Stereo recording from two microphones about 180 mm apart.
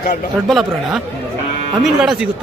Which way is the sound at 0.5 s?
Centre (ahead or behind).